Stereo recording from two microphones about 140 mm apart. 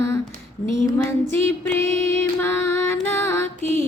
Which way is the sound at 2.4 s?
15° left (ahead or behind).